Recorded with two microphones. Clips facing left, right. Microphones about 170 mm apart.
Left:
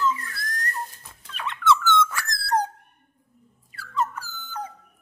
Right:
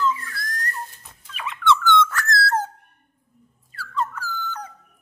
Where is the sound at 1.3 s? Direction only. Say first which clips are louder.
Right 1 dB; centre (ahead or behind); by 2.7 s 15° left (ahead or behind).